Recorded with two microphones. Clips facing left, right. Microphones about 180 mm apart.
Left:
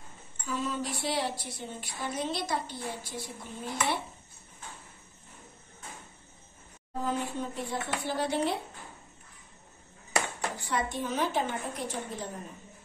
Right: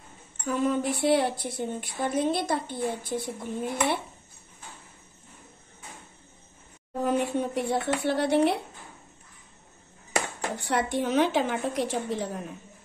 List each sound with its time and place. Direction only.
0.5 s a woman's voice: 55° right (ahead or behind)
7.0 s a woman's voice: 65° right (ahead or behind)
10.6 s a woman's voice: 75° right (ahead or behind)